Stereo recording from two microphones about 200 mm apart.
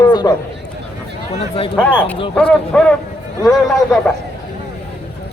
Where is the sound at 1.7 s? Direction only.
5° left (ahead or behind).